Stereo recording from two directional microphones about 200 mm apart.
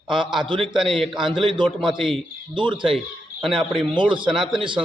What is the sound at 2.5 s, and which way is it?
Speech, 25° right (ahead or behind).